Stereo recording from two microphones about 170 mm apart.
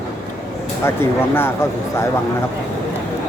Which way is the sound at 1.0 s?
15° left (ahead or behind).